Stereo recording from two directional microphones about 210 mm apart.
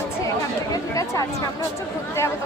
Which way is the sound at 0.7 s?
15° left (ahead or behind).